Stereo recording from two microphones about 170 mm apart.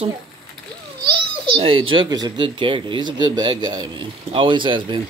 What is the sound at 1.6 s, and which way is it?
Speech, 30° right (ahead or behind).